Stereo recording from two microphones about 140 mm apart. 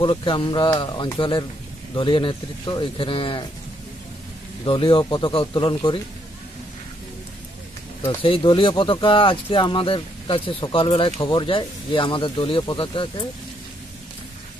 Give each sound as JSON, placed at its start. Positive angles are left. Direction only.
{"t": 0.0, "sound": "speech", "side_deg": 40}
{"t": 4.6, "sound": "speech", "side_deg": 40}
{"t": 8.2, "sound": "speech", "side_deg": 40}